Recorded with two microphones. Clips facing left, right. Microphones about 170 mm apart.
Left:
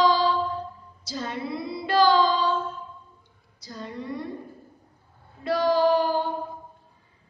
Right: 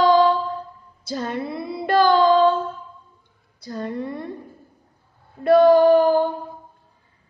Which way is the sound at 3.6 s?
55° right (ahead or behind).